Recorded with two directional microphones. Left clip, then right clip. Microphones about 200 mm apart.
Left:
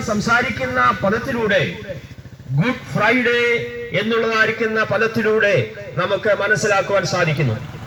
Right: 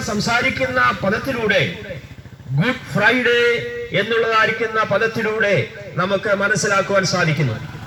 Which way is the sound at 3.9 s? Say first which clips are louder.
Right 1 dB; 40° left (ahead or behind).